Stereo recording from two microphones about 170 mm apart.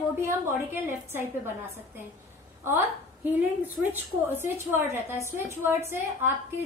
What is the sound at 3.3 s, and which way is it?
A woman's voice, 10° right (ahead or behind).